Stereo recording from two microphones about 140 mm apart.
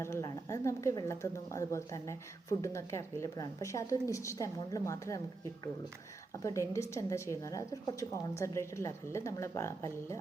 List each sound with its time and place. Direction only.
0.0 s speech: 20° left (ahead or behind)
6.3 s speech: 20° left (ahead or behind)